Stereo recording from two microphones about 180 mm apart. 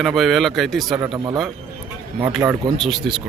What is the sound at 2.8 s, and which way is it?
Speech, centre (ahead or behind).